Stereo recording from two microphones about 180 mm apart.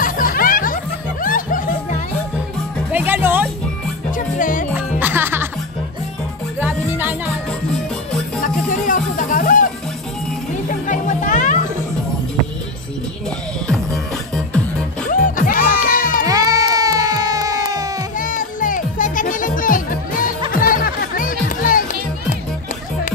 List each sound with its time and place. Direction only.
0.0 s music: 50° left (ahead or behind)
2.9 s music: 10° right (ahead or behind)
4.4 s music: 50° left (ahead or behind)
4.7 s music: 10° right (ahead or behind)
6.6 s music: 10° right (ahead or behind)
8.4 s music: 50° left (ahead or behind)
13.7 s music: 5° left (ahead or behind)
15.0 s music: 50° left (ahead or behind)
16.3 s a sound: 20° right (ahead or behind)
18.1 s music: 50° left (ahead or behind)